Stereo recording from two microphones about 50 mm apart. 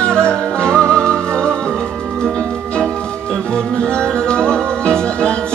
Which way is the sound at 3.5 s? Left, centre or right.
Centre.